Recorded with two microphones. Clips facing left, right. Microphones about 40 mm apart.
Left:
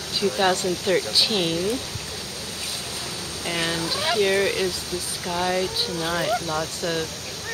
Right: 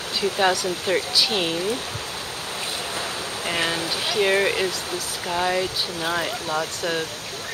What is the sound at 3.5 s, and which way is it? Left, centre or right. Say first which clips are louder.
Speech: right 1 dB; right.